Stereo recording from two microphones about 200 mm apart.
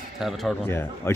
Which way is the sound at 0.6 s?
10° left (ahead or behind).